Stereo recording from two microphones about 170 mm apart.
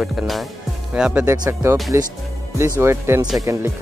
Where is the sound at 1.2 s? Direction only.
20° right (ahead or behind).